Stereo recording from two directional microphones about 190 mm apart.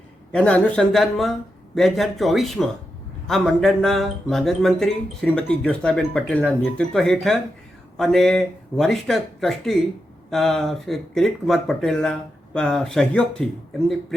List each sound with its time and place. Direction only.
0.3 s speech: 5° left (ahead or behind)